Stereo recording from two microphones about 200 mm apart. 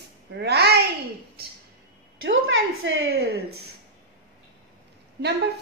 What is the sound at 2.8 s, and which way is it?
Speech, 85° right.